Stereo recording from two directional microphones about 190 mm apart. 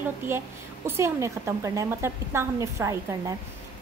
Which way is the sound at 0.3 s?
15° right (ahead or behind).